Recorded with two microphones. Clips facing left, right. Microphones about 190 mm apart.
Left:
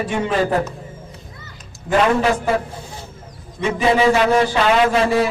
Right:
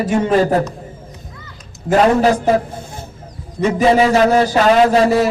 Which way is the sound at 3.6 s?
40° right (ahead or behind).